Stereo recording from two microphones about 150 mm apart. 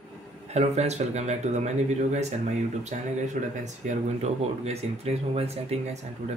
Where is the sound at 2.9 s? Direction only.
55° right (ahead or behind).